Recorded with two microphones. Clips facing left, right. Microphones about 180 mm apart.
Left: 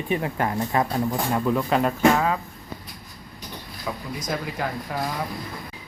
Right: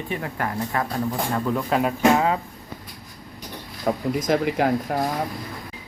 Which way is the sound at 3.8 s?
55° right (ahead or behind).